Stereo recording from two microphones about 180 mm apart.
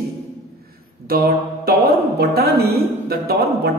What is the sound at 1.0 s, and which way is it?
Speech, 55° right (ahead or behind).